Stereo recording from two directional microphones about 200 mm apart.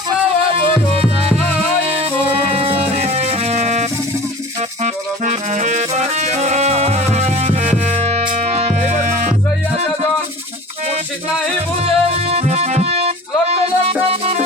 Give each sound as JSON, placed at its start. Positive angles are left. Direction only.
{"t": 0.5, "sound": "music", "side_deg": -30}
{"t": 2.5, "sound": "music", "side_deg": -30}
{"t": 11.8, "sound": "music", "side_deg": -30}